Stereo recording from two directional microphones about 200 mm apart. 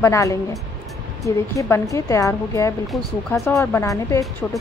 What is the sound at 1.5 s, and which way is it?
A woman's voice, 15° left (ahead or behind).